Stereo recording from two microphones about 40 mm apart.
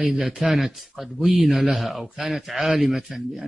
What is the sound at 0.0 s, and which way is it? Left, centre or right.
Speech, centre.